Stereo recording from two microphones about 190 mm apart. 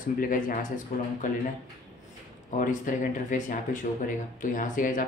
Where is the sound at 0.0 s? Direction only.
45° left (ahead or behind).